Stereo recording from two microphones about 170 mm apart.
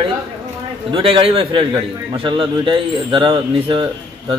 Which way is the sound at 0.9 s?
30° right (ahead or behind).